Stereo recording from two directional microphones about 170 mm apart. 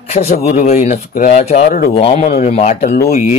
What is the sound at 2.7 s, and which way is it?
Speech, 65° left (ahead or behind).